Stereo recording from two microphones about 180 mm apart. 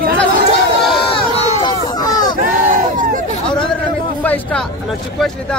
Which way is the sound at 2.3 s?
50° right (ahead or behind).